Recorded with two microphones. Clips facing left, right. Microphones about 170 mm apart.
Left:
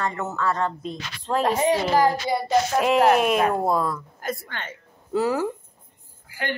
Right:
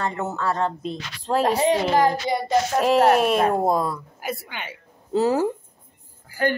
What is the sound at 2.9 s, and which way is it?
Speech, 35° right (ahead or behind).